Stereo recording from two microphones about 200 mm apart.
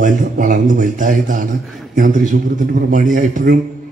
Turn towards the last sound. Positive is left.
turn(degrees=-40)  # may be behind; listen again after turning